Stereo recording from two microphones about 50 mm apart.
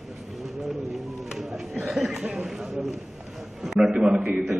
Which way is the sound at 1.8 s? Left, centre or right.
Centre.